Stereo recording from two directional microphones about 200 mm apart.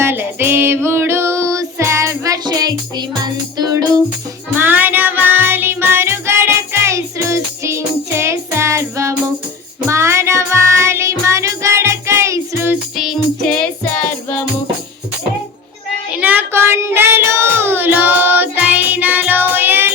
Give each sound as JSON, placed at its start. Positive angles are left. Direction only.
{"t": 0.0, "sound": "music", "side_deg": -10}
{"t": 13.0, "sound": "music", "side_deg": 0}
{"t": 16.1, "sound": "child singing", "side_deg": -10}